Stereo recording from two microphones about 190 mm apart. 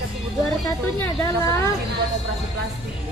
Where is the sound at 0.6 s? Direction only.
15° left (ahead or behind).